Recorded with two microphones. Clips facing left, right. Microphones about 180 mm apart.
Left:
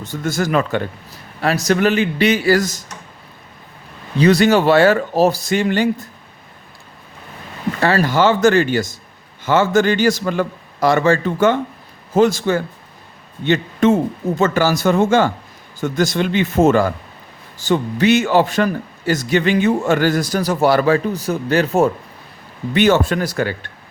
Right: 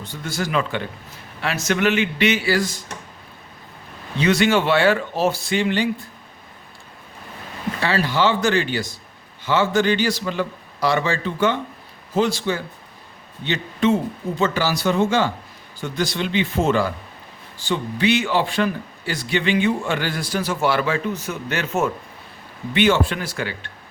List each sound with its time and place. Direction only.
0.0 s a man's voice: 45° left (ahead or behind)
4.2 s speech: 40° left (ahead or behind)
7.8 s a man's voice: 45° left (ahead or behind)